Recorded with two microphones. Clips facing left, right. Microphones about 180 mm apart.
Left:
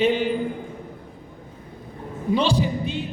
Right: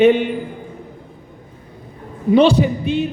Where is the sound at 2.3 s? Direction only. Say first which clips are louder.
Right 9 dB; 60° right (ahead or behind).